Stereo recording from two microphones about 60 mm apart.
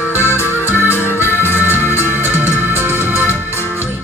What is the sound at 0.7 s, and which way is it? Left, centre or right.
Music, left.